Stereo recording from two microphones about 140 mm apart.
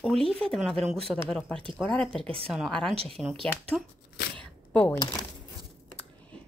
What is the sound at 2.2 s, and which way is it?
Speech, 40° right (ahead or behind).